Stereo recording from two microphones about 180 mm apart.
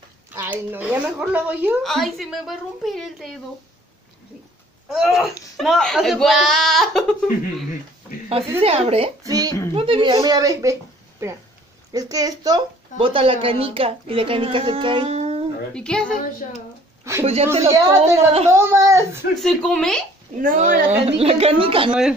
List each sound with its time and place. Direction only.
0.3 s a woman's voice: 10° right (ahead or behind)
4.8 s speech: centre (ahead or behind)
8.3 s a woman's voice: 35° right (ahead or behind)
9.2 s a sound: 20° right (ahead or behind)
9.8 s a woman's voice: 30° right (ahead or behind)
15.7 s speech: 5° left (ahead or behind)
16.2 s a woman's voice: 50° left (ahead or behind)
17.5 s a woman's voice: 15° right (ahead or behind)
19.4 s speech: 5° left (ahead or behind)
20.3 s a woman's voice: 45° right (ahead or behind); by 21.9 s 30° right (ahead or behind)